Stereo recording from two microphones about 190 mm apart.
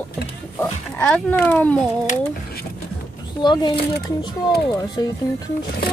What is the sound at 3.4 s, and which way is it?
Speech, 25° left (ahead or behind).